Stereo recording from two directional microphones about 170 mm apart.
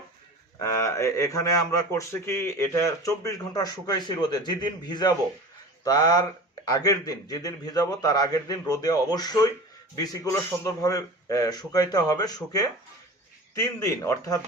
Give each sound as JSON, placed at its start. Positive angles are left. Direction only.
{"t": 0.6, "sound": "a man's voice", "side_deg": 15}